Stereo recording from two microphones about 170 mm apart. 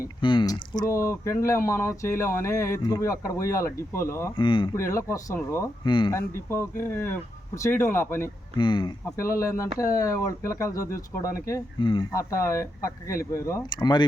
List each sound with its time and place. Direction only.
0.0 s speech: 30° left (ahead or behind)
4.4 s speech: 30° left (ahead or behind)
4.7 s speech: 15° left (ahead or behind)
5.8 s speech: 25° left (ahead or behind)
6.1 s speech: 15° left (ahead or behind)
8.5 s speech: 25° left (ahead or behind)